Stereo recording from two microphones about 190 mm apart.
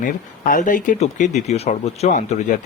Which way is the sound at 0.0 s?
45° left (ahead or behind).